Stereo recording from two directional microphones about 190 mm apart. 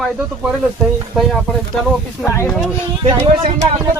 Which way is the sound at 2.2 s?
15° left (ahead or behind).